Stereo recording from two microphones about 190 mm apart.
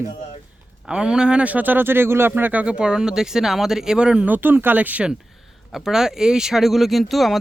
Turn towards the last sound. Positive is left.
turn(degrees=0)  # may be behind; listen again after turning